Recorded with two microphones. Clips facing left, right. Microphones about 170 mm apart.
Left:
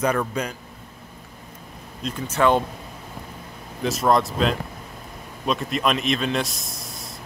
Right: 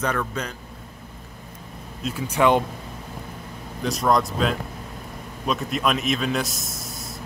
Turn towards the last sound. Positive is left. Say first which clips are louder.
# right 2 dB
turn(degrees=0)  # may be behind; listen again after turning